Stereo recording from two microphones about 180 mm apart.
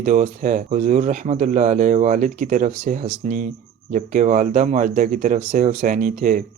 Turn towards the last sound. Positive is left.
turn(degrees=-45)  # may be behind; listen again after turning